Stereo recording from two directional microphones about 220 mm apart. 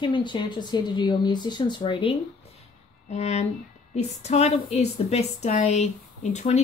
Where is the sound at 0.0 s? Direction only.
20° left (ahead or behind).